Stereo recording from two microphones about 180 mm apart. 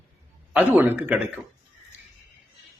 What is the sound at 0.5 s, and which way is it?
Speech, 10° right (ahead or behind).